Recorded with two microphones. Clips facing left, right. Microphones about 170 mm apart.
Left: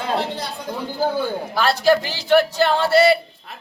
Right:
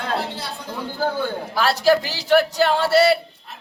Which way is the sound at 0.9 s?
15° left (ahead or behind).